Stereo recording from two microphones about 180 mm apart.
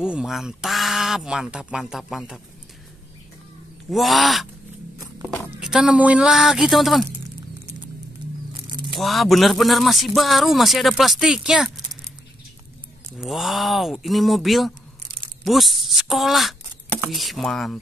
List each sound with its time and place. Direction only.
0.0 s a man's voice: 5° right (ahead or behind)
3.9 s a man's voice: centre (ahead or behind)
4.9 s walk: 15° right (ahead or behind)
5.6 s a man's voice: 5° right (ahead or behind)
9.0 s a man's voice: centre (ahead or behind)
13.2 s a man's voice: centre (ahead or behind)